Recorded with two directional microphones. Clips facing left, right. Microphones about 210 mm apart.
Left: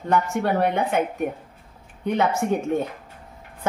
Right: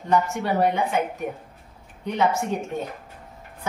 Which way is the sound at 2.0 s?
55° left (ahead or behind).